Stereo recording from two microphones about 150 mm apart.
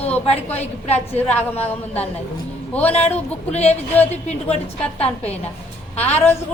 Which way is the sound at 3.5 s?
45° left (ahead or behind).